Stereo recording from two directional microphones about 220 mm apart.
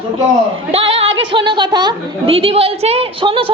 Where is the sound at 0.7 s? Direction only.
25° right (ahead or behind).